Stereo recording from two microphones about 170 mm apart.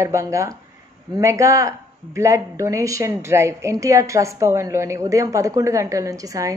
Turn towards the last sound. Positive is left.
turn(degrees=-20)  # may be behind; listen again after turning